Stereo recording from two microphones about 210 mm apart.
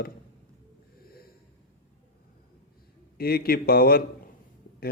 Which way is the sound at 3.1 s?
45° left (ahead or behind).